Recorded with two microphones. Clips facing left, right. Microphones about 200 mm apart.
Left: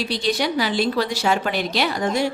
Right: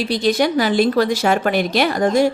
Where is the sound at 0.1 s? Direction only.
50° right (ahead or behind).